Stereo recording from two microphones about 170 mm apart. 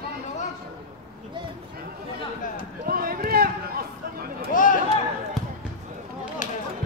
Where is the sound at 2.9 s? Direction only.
60° right (ahead or behind).